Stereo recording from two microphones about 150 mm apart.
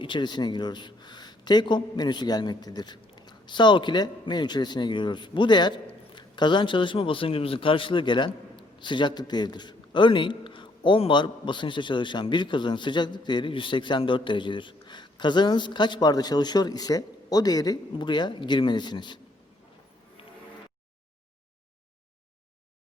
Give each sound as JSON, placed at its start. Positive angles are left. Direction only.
{"t": 0.0, "sound": "a man's voice", "side_deg": 30}